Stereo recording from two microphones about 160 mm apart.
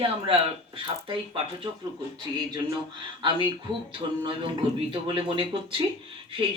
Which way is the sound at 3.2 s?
30° right (ahead or behind).